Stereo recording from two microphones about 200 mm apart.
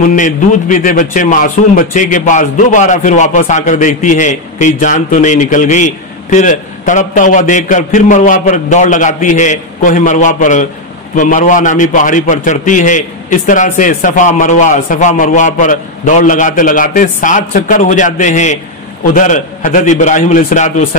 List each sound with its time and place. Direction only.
0.0 s a man's voice: 40° left (ahead or behind)